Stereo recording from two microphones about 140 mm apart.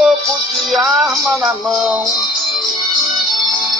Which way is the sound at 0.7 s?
Centre (ahead or behind).